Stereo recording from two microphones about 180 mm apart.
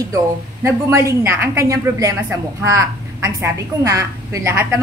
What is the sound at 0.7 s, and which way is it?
Speech, 15° right (ahead or behind).